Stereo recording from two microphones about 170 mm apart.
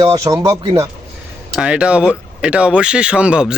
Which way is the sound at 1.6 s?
5° right (ahead or behind).